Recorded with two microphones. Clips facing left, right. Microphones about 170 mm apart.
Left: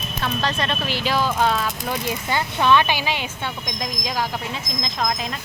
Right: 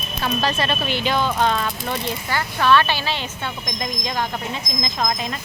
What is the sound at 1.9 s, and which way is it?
Speech, 20° left (ahead or behind).